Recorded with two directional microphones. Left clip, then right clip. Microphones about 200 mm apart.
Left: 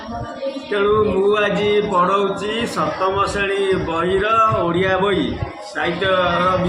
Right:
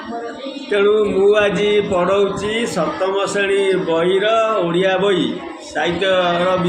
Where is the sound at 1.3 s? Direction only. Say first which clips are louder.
Right 2 dB; 10° right (ahead or behind).